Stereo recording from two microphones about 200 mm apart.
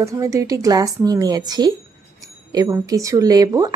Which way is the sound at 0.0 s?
15° right (ahead or behind).